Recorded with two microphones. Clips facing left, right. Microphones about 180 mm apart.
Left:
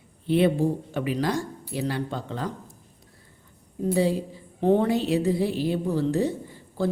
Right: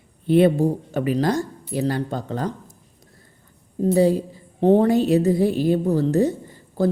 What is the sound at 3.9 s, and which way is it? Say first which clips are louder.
A woman's voice: right 6 dB; 45° right (ahead or behind).